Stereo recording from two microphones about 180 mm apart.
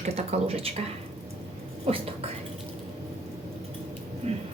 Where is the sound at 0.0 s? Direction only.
35° right (ahead or behind).